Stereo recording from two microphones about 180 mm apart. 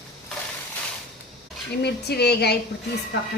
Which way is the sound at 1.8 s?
65° left (ahead or behind).